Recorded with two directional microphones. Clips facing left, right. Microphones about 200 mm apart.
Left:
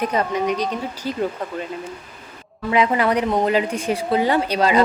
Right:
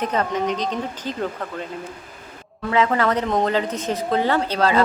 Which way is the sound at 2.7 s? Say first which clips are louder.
Left 1 dB; 15° left (ahead or behind).